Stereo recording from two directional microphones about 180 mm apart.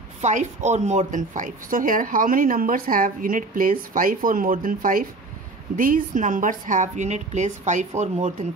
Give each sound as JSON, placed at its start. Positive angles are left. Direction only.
{"t": 0.2, "sound": "a woman's voice", "side_deg": -40}